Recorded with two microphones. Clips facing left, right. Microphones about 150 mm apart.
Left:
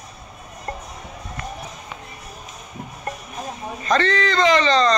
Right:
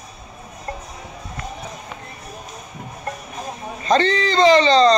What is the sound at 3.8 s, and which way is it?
Speech, 30° right (ahead or behind).